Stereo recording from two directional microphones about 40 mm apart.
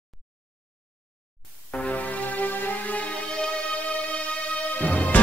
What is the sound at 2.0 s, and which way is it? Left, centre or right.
Music, left.